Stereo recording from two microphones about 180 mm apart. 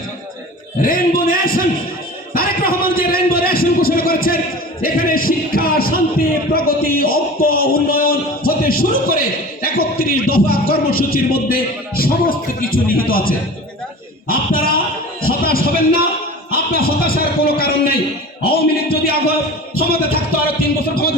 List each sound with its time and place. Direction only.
0.8 s speech: 55° left (ahead or behind)
2.3 s a sound: 55° left (ahead or behind)
4.8 s a man's voice: 55° left (ahead or behind)